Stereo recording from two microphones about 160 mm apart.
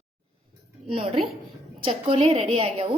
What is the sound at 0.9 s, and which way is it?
A woman's voice, 35° right (ahead or behind).